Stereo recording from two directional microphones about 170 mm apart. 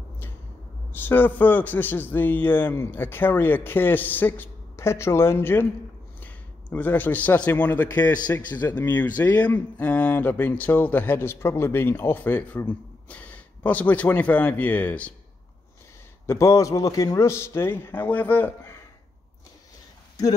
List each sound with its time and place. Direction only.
0.9 s a man's voice: 10° left (ahead or behind)
16.3 s speech: 15° left (ahead or behind)